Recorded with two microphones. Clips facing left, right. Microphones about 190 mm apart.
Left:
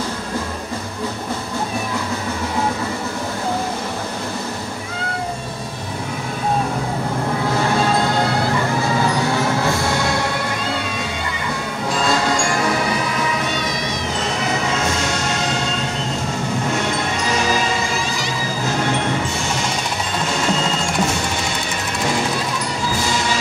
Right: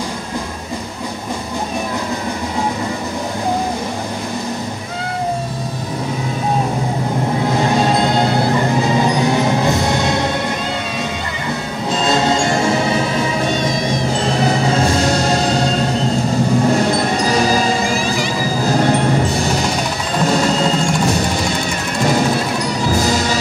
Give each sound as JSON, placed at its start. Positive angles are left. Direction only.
{"t": 7.5, "sound": "music", "side_deg": -20}
{"t": 11.9, "sound": "music", "side_deg": -25}
{"t": 14.4, "sound": "music", "side_deg": -35}